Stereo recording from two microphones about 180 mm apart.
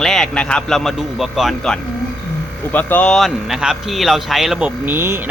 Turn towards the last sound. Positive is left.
turn(degrees=-10)  # may be behind; listen again after turning